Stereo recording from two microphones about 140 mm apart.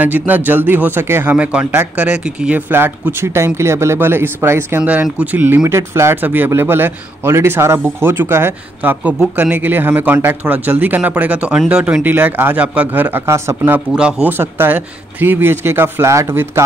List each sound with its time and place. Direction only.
0.0 s a man's voice: 10° right (ahead or behind)
13.7 s a man's voice: 5° right (ahead or behind)